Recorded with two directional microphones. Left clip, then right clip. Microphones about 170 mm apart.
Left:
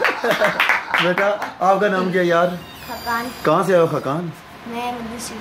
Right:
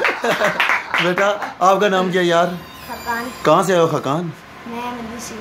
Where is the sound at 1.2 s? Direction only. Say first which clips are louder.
Right 3 dB; 20° right (ahead or behind).